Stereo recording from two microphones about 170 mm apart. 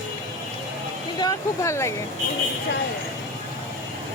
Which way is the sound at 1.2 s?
20° left (ahead or behind).